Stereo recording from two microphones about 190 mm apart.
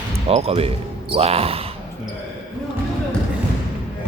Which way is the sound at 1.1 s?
30° right (ahead or behind).